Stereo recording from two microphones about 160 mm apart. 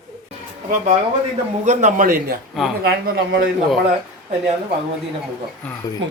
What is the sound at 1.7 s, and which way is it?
Speech, 50° right (ahead or behind).